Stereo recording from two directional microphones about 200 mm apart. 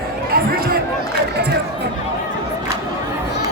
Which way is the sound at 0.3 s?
50° right (ahead or behind).